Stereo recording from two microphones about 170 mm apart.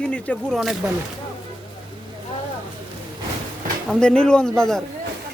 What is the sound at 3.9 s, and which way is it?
Speech, 5° left (ahead or behind).